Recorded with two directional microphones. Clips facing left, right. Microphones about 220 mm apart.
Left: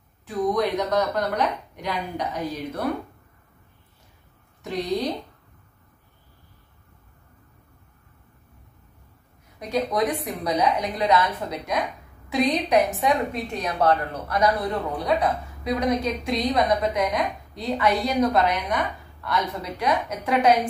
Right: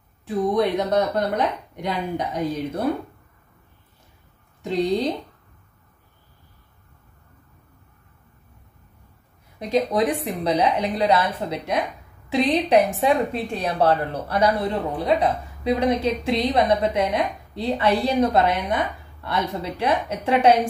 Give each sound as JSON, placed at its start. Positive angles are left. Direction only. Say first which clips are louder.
{"t": 0.3, "sound": "speech", "louder": "right 2 dB", "side_deg": -25}
{"t": 4.6, "sound": "speech", "louder": "right 4 dB", "side_deg": -25}
{"t": 9.6, "sound": "speech", "louder": "right 3 dB", "side_deg": -30}